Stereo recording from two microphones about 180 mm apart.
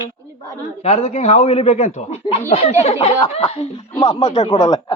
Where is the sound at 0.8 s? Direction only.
35° left (ahead or behind).